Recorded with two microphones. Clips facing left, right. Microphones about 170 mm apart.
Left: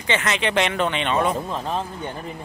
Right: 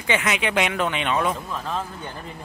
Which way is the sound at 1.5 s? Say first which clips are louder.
Left 3 dB; 25° left (ahead or behind).